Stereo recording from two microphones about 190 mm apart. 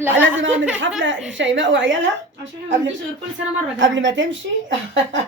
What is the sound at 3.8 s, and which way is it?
Speech, 75° right (ahead or behind).